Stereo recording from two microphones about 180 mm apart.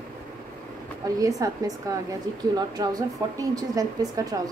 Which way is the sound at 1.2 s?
20° right (ahead or behind).